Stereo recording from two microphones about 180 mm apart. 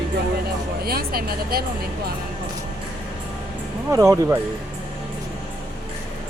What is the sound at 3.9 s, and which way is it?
Speech, 15° right (ahead or behind).